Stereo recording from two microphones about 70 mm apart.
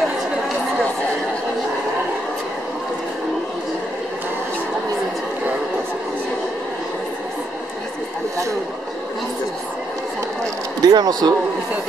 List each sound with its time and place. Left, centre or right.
10.8 s speech: right